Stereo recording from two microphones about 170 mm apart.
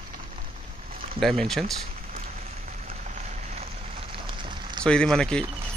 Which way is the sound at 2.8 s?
45° right (ahead or behind).